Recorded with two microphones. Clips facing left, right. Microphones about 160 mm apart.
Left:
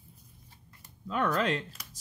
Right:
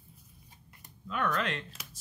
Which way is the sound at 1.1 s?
35° left (ahead or behind).